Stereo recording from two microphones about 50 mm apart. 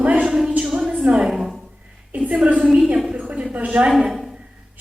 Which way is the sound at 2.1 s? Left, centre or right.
Right.